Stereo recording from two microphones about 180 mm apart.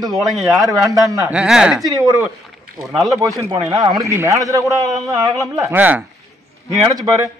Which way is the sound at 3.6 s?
20° right (ahead or behind).